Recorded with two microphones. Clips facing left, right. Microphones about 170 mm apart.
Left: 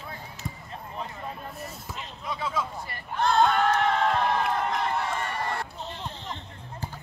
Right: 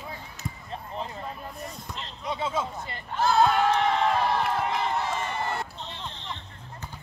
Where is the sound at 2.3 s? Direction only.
25° right (ahead or behind).